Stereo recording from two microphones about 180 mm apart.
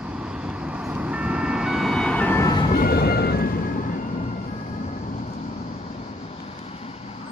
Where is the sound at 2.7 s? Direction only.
60° left (ahead or behind).